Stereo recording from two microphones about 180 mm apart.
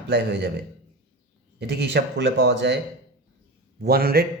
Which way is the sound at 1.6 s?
70° right (ahead or behind).